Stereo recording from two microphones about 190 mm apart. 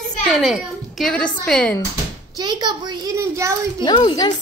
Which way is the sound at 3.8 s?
25° left (ahead or behind).